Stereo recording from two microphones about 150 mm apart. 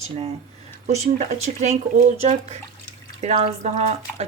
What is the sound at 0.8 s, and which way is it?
Speech, 50° right (ahead or behind).